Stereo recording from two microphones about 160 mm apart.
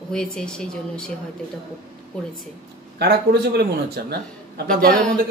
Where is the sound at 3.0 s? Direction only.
90° right.